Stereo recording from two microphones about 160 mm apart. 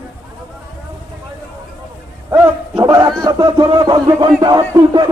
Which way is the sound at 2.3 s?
25° right (ahead or behind).